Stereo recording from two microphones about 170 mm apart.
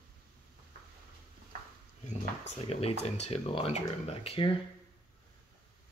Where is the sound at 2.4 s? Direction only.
35° left (ahead or behind).